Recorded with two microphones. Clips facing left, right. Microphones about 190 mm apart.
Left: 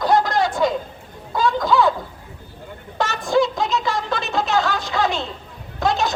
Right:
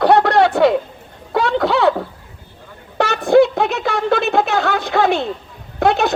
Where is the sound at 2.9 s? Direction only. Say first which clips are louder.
Right 7 dB; 60° right (ahead or behind).